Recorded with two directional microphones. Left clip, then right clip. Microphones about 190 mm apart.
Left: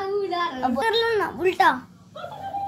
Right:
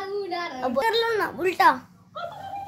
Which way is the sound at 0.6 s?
30° right (ahead or behind).